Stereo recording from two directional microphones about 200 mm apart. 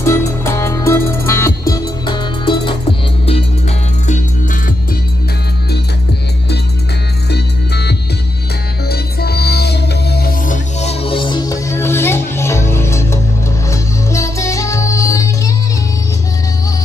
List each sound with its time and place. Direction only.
0.0 s music: 15° left (ahead or behind)
7.2 s music: 55° left (ahead or behind)
10.8 s music: 30° left (ahead or behind)